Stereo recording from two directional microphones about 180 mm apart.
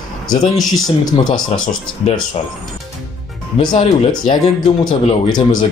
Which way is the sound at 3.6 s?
30° left (ahead or behind).